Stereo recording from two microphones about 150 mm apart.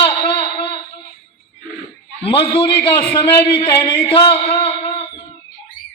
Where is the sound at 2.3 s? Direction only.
35° left (ahead or behind).